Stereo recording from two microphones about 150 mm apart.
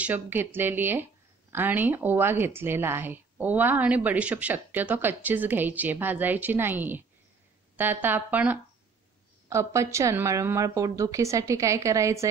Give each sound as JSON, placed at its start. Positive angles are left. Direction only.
{"t": 0.0, "sound": "a woman's voice", "side_deg": -10}